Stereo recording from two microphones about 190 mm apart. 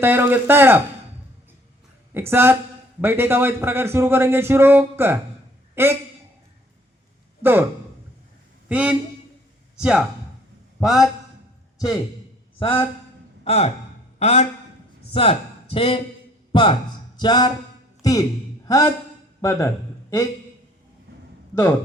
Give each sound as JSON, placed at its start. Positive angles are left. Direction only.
{"t": 0.0, "sound": "a man's voice", "side_deg": -10}
{"t": 2.3, "sound": "a man's voice", "side_deg": -10}
{"t": 7.4, "sound": "a man's voice", "side_deg": -10}
{"t": 8.7, "sound": "a man's voice", "side_deg": -5}
{"t": 12.5, "sound": "a man's voice", "side_deg": 30}